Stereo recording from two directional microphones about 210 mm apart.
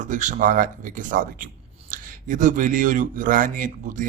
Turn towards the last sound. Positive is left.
turn(degrees=-40)  # may be behind; listen again after turning